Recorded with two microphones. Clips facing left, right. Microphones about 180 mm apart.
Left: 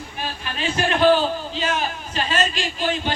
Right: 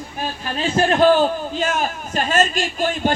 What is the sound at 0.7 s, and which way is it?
Speech, 45° right (ahead or behind).